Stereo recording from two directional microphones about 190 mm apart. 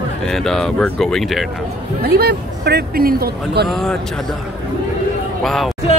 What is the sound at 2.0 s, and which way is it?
Speech, 55° right (ahead or behind).